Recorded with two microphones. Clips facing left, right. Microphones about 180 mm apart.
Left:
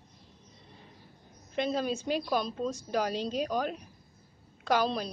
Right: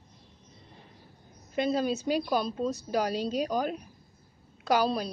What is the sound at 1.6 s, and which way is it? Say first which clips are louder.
A woman's voice: right 3 dB; 5° right (ahead or behind).